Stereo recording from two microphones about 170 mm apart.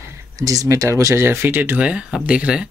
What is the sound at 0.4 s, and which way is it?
Speech, 20° right (ahead or behind).